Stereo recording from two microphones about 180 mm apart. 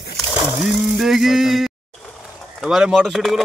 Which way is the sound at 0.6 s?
Centre (ahead or behind).